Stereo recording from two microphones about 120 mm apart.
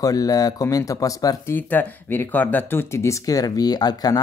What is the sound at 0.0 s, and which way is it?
Speech, 30° left (ahead or behind).